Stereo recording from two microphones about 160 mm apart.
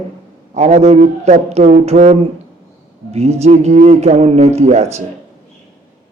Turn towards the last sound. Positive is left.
turn(degrees=-45)  # may be behind; listen again after turning